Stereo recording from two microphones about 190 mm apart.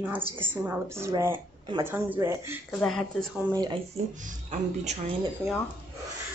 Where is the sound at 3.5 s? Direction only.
20° right (ahead or behind).